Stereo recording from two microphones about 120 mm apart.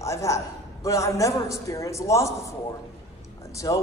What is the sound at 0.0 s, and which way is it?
A man's voice, 25° left (ahead or behind).